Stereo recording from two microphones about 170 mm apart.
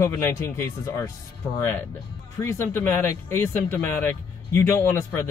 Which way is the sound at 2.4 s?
15° left (ahead or behind).